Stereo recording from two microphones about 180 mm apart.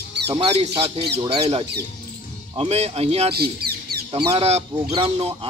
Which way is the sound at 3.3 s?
60° right (ahead or behind).